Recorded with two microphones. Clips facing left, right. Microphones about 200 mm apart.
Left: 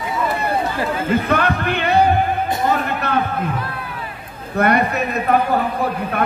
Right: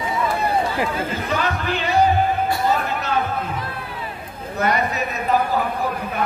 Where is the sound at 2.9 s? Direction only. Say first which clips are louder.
Left 3 dB; 60° left (ahead or behind).